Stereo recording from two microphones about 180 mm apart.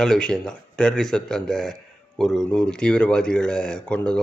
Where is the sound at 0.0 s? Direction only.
5° left (ahead or behind).